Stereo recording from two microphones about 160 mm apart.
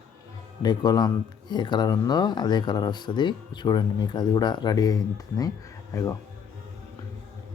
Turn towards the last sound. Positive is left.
turn(degrees=20)  # may be behind; listen again after turning